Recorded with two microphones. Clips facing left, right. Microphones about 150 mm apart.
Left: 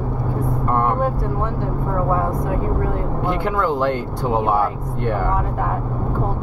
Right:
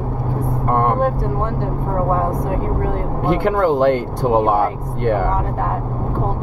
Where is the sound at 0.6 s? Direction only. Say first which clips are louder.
Right 3 dB; 55° right (ahead or behind).